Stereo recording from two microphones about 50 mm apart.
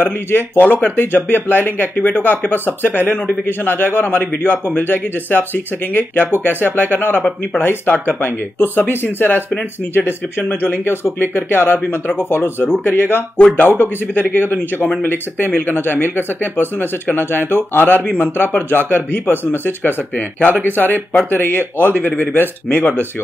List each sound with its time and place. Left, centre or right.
0.0 s speech: left